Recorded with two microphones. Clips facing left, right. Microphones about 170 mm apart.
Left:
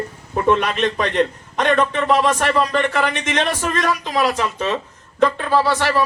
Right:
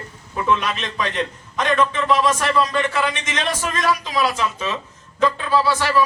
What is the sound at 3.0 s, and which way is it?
Speech, 60° left (ahead or behind).